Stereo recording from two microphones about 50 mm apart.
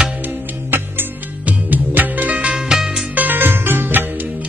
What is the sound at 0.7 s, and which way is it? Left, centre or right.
Music, right.